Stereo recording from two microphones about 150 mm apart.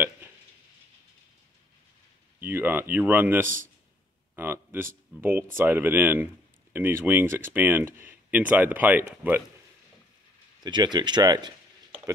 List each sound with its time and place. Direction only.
2.4 s speech: 15° right (ahead or behind)
10.6 s speech: 30° right (ahead or behind)